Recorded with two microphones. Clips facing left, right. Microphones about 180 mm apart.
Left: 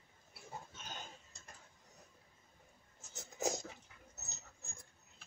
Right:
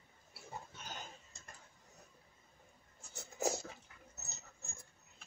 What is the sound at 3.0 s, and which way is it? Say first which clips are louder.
Writing: right 2 dB; 20° left (ahead or behind).